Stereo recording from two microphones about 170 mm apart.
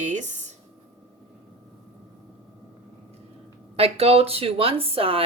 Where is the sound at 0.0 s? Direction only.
45° right (ahead or behind).